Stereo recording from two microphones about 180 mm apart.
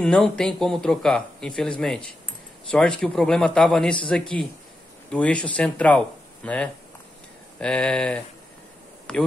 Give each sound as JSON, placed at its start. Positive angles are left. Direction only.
{"t": 0.0, "sound": "speech", "side_deg": 5}